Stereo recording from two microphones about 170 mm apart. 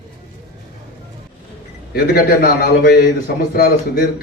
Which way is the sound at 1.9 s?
60° left (ahead or behind).